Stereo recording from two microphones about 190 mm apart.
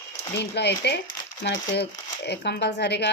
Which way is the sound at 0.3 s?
65° left (ahead or behind).